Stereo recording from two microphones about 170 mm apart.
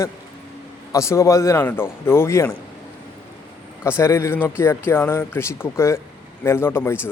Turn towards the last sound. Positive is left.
turn(degrees=15)  # may be behind; listen again after turning